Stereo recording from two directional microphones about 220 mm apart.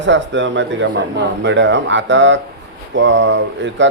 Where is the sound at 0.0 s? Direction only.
55° right (ahead or behind).